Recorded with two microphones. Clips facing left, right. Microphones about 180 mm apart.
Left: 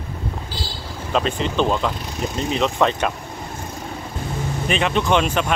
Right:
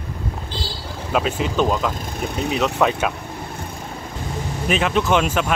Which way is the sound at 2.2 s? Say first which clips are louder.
Even; 60° right (ahead or behind).